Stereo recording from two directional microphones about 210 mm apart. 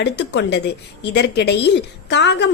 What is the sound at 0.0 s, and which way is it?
A woman's voice, 55° left (ahead or behind).